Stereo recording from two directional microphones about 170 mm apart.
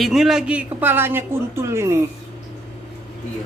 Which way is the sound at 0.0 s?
Centre (ahead or behind).